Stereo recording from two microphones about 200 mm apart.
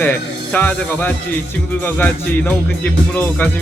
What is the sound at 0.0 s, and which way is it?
Speech, 10° left (ahead or behind).